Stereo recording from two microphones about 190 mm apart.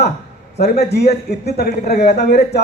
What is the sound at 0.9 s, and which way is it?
A man's voice, 60° left (ahead or behind).